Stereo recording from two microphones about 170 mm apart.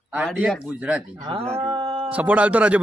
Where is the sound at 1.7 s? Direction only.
30° right (ahead or behind).